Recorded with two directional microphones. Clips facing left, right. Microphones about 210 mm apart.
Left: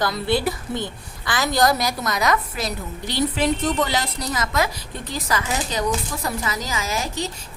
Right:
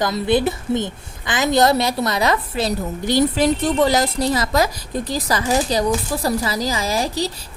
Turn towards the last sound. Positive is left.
turn(degrees=-35)  # may be behind; listen again after turning